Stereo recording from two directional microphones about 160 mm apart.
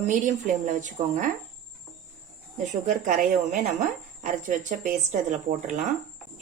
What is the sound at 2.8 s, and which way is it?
A woman's voice, 55° right (ahead or behind).